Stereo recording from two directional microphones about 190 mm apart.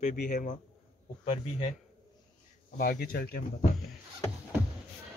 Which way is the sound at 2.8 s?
50° left (ahead or behind).